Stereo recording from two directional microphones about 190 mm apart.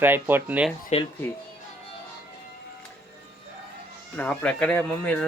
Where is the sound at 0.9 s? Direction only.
35° left (ahead or behind).